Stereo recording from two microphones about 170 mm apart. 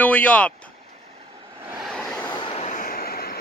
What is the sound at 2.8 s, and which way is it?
Vehicle, 60° left (ahead or behind).